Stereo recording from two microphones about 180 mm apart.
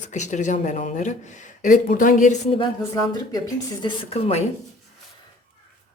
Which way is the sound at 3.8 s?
35° left (ahead or behind).